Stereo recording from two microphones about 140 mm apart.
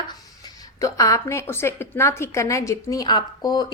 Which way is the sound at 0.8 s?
25° left (ahead or behind).